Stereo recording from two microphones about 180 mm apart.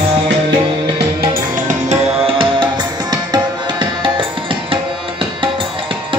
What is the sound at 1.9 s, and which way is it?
Music, 30° right (ahead or behind).